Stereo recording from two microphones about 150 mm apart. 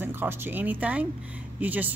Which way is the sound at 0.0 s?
15° right (ahead or behind).